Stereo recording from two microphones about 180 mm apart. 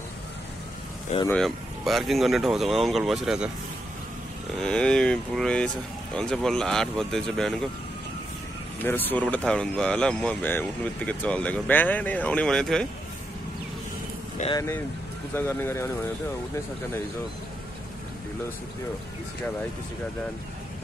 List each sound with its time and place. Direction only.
1.3 s speech: centre (ahead or behind)
4.6 s speech: 5° left (ahead or behind)
8.8 s speech: 10° left (ahead or behind)
14.4 s speech: 40° left (ahead or behind)
15.3 s speech: 10° left (ahead or behind)